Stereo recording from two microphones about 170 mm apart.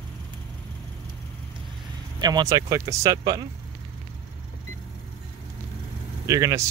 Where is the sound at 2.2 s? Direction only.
25° right (ahead or behind).